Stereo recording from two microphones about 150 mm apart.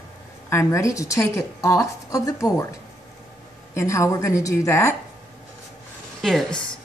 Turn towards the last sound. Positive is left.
turn(degrees=5)  # may be behind; listen again after turning